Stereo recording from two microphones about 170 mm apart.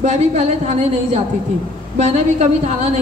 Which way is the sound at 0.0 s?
40° right (ahead or behind).